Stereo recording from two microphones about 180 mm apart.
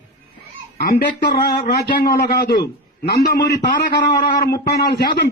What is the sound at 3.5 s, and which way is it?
Speech, 25° left (ahead or behind).